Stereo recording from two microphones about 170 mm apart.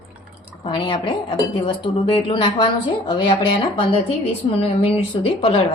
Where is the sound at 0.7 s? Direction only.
25° left (ahead or behind).